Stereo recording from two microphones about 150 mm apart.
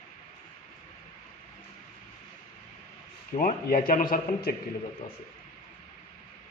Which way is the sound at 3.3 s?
70° left (ahead or behind).